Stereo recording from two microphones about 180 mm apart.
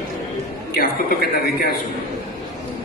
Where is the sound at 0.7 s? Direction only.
60° left (ahead or behind).